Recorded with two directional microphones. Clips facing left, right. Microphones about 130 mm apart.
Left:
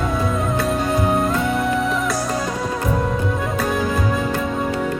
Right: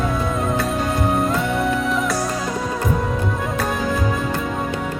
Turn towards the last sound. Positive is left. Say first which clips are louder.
# left 1 dB
turn(degrees=0)  # may be behind; listen again after turning